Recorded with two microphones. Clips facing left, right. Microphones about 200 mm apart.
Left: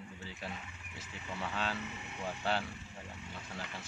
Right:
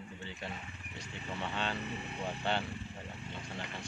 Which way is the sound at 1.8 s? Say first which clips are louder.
Right 4 dB; 35° right (ahead or behind).